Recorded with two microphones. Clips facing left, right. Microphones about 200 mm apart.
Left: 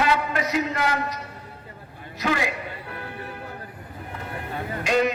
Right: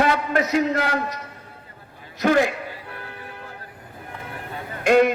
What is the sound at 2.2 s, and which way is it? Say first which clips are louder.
Speech: right 7 dB; 50° right (ahead or behind).